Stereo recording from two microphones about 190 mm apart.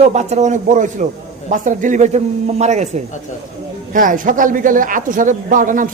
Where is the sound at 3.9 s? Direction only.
45° right (ahead or behind).